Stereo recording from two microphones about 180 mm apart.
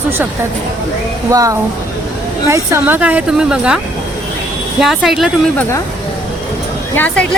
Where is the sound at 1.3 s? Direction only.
20° right (ahead or behind).